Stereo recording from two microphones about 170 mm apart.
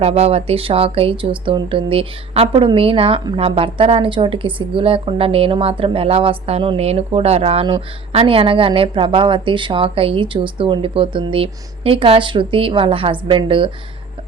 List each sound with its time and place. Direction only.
0.0 s speech: 35° right (ahead or behind)